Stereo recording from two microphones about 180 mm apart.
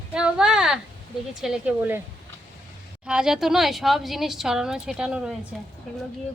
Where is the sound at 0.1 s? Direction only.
5° right (ahead or behind).